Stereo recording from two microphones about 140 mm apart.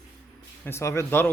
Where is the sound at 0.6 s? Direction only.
20° left (ahead or behind).